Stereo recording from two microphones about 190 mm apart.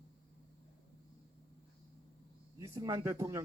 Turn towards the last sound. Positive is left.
turn(degrees=-15)  # may be behind; listen again after turning